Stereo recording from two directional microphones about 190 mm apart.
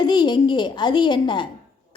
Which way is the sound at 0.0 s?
20° left (ahead or behind).